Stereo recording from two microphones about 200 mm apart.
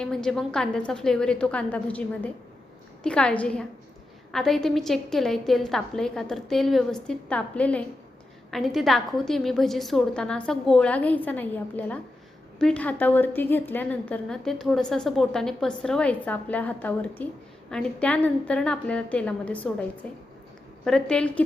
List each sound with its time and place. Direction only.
0.0 s a woman's voice: 5° left (ahead or behind)
20.8 s a woman's voice: 5° left (ahead or behind)